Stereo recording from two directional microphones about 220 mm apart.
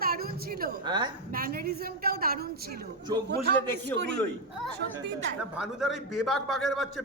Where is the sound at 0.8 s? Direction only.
20° right (ahead or behind).